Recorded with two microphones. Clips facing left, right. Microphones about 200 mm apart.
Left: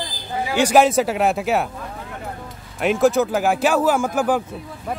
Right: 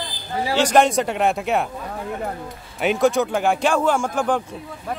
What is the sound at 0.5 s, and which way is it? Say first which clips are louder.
Speech: left 2 dB; 10° left (ahead or behind).